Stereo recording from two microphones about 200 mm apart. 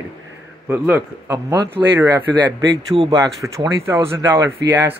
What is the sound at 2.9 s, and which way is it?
Speech, 25° right (ahead or behind).